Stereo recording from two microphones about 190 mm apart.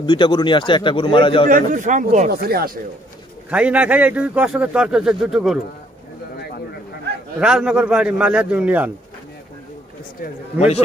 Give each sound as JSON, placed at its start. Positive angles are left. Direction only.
{"t": 0.0, "sound": "a man's voice", "side_deg": 25}
{"t": 1.5, "sound": "speech", "side_deg": -45}
{"t": 3.4, "sound": "a man's voice", "side_deg": -5}
{"t": 7.3, "sound": "a man's voice", "side_deg": -5}